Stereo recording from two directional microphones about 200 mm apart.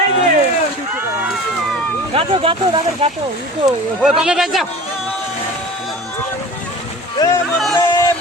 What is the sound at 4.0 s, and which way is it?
Speech, 5° right (ahead or behind).